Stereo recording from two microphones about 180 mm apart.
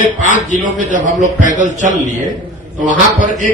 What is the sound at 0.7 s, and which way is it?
A man's voice, 45° right (ahead or behind).